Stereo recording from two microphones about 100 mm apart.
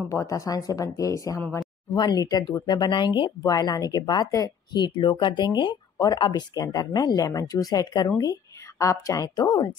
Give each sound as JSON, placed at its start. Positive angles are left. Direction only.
{"t": 0.1, "sound": "speech", "side_deg": 35}
{"t": 2.0, "sound": "a woman's voice", "side_deg": 45}
{"t": 4.8, "sound": "a woman's voice", "side_deg": 55}
{"t": 9.3, "sound": "a woman's voice", "side_deg": 50}